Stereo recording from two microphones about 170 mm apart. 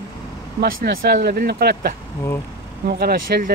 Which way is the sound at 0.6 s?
75° right (ahead or behind).